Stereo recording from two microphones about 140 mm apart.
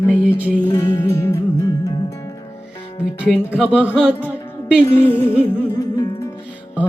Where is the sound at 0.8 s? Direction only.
25° left (ahead or behind).